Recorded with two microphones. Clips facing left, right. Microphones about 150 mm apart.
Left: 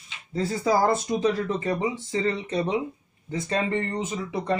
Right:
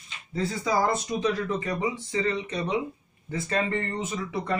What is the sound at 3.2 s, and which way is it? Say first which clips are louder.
Speech: left 1 dB; 20° left (ahead or behind).